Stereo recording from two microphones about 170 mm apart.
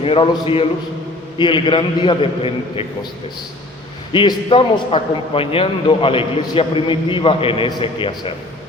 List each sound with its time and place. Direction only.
0.0 s a man's voice: 35° left (ahead or behind)
4.1 s a man's voice: 30° left (ahead or behind)